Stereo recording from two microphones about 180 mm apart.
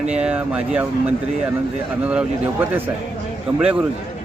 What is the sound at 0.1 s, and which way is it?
Speech, 5° right (ahead or behind).